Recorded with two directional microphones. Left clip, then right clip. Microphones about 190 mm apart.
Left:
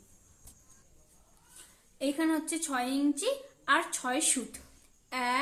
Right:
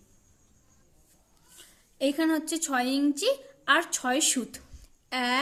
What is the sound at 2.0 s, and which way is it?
A woman's voice, 40° right (ahead or behind).